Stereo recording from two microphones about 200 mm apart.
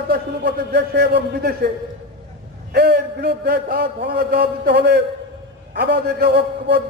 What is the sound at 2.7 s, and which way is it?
A man's voice, 55° right (ahead or behind).